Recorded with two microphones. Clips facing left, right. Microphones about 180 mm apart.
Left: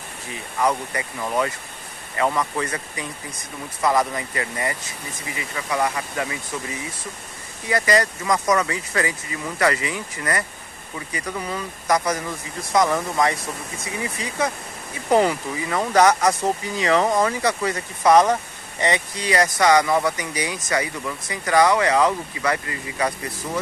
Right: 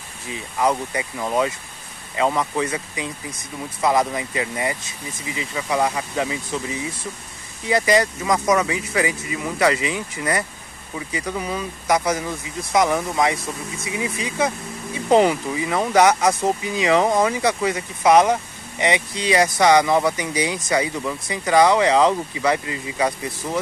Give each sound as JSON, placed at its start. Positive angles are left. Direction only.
{"t": 0.3, "sound": "speech", "side_deg": -20}